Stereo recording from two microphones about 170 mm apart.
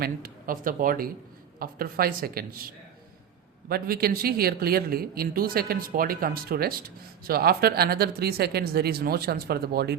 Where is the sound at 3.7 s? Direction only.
65° right (ahead or behind).